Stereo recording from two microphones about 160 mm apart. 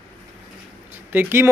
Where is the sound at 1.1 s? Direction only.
15° right (ahead or behind).